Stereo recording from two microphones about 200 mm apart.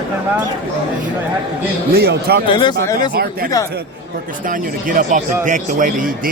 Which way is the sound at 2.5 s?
20° left (ahead or behind).